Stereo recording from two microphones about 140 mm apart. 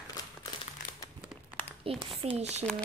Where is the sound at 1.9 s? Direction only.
40° right (ahead or behind).